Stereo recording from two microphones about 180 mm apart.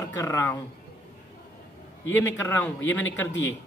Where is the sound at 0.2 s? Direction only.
15° left (ahead or behind).